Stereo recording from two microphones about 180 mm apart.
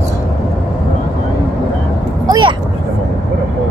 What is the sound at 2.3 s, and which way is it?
Speech, 25° right (ahead or behind).